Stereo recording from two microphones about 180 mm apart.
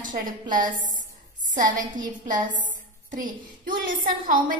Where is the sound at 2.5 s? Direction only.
45° right (ahead or behind).